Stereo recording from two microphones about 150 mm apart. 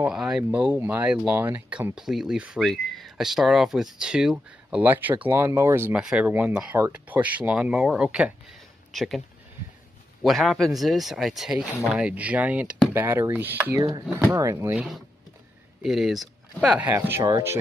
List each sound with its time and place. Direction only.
0.0 s speech: 5° right (ahead or behind)
10.2 s speech: centre (ahead or behind); by 14.9 s 15° right (ahead or behind)
15.8 s speech: centre (ahead or behind); by 17.6 s 20° right (ahead or behind)